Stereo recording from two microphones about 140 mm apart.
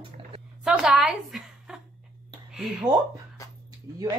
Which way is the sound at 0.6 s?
5° right (ahead or behind).